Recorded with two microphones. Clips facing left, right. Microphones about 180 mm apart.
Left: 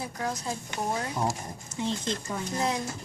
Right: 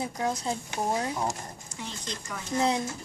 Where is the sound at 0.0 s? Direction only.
20° right (ahead or behind).